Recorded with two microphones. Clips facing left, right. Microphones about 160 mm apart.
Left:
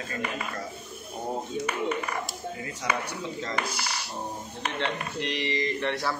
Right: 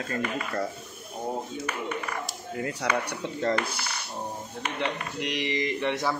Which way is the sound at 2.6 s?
65° right (ahead or behind).